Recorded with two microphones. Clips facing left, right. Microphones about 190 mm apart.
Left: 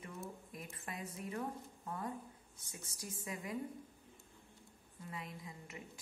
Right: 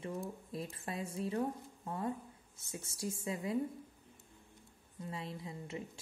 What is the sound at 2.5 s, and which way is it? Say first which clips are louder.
Speech: right 12 dB; 25° right (ahead or behind).